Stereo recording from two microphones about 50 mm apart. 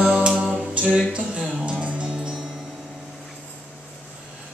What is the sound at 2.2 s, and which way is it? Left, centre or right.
Music, centre.